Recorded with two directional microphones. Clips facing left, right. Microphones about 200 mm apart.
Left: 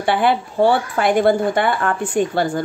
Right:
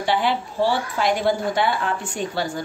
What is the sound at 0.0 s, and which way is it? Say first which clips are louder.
A woman's voice: left 4 dB; 55° left (ahead or behind).